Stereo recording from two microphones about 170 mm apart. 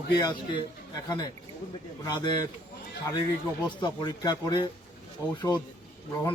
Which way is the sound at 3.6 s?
25° left (ahead or behind).